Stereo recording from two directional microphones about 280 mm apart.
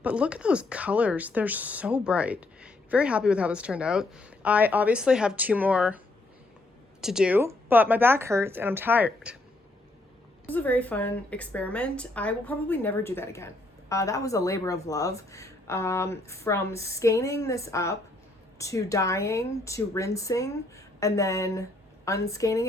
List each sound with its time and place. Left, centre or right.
0.0 s speech: centre
7.0 s speech: centre
10.5 s speech: centre